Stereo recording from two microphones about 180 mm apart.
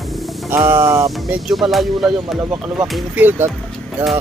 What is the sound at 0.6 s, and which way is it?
Speech, 15° right (ahead or behind).